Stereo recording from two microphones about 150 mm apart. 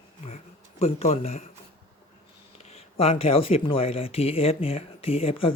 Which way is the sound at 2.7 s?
45° left (ahead or behind).